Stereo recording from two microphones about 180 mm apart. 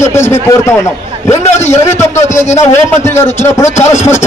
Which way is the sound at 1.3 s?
40° left (ahead or behind).